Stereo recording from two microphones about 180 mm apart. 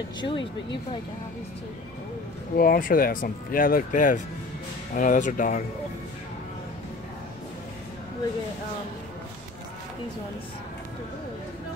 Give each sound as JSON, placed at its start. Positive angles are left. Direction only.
{"t": 0.2, "sound": "speech", "side_deg": 25}
{"t": 2.5, "sound": "speech", "side_deg": 55}